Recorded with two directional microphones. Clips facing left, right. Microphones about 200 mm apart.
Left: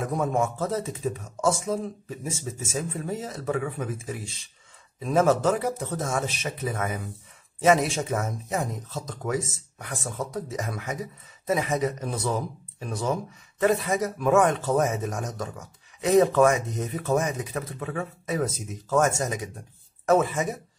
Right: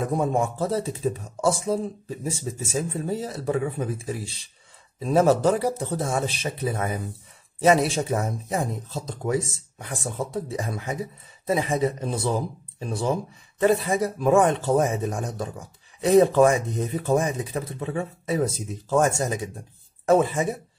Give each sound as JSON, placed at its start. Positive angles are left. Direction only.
{"t": 0.0, "sound": "a man's voice", "side_deg": -30}